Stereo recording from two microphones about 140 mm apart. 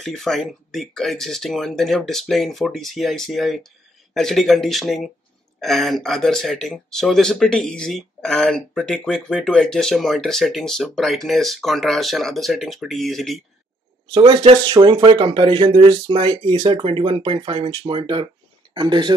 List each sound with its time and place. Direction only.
0.0 s speech: centre (ahead or behind)
14.1 s speech: 35° right (ahead or behind)